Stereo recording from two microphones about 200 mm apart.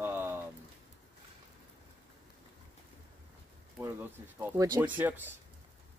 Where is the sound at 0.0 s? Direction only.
10° right (ahead or behind).